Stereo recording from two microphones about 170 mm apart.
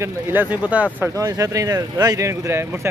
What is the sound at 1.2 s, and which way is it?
Speech, 20° right (ahead or behind).